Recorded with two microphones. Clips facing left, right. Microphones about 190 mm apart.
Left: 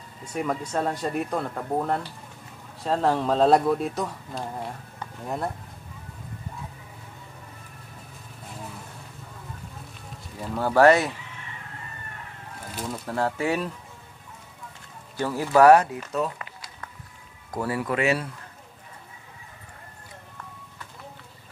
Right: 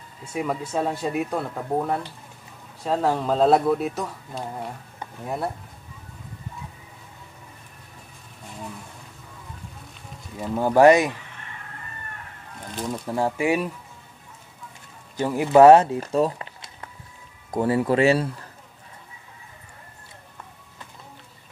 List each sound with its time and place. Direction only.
0.2 s speech: 5° right (ahead or behind)
10.4 s speech: 20° right (ahead or behind)
12.8 s speech: 15° right (ahead or behind)
15.1 s speech: 20° right (ahead or behind)